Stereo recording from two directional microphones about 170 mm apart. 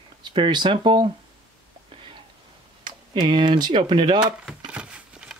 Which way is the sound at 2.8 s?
25° right (ahead or behind).